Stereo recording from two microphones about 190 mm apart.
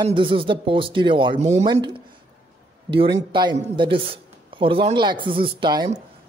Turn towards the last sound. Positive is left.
turn(degrees=-25)  # may be behind; listen again after turning